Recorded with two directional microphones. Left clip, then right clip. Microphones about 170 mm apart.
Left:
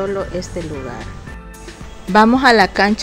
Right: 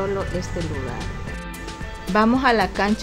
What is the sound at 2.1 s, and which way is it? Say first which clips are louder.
Speech: left 7 dB; 30° left (ahead or behind).